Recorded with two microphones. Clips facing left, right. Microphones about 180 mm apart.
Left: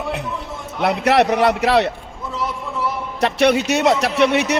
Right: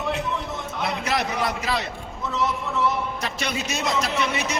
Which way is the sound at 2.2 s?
10° left (ahead or behind).